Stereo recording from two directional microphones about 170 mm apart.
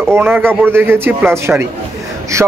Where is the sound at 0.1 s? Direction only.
10° right (ahead or behind).